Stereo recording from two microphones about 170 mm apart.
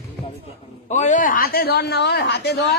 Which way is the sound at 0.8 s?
45° left (ahead or behind).